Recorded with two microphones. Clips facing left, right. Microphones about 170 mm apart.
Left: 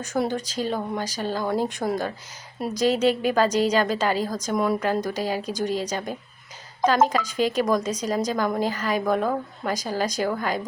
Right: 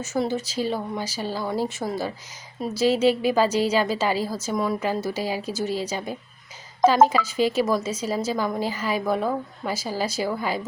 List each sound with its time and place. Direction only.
0.0 s a woman's voice: 5° right (ahead or behind)